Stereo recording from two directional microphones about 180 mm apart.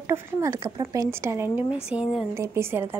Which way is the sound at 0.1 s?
15° right (ahead or behind).